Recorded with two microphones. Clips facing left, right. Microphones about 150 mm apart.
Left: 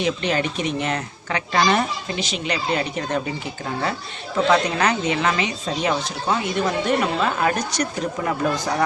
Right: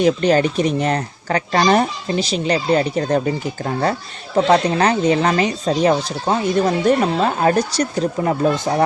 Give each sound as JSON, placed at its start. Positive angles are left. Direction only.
{"t": 0.0, "sound": "speech", "side_deg": -40}
{"t": 4.4, "sound": "speech", "side_deg": -35}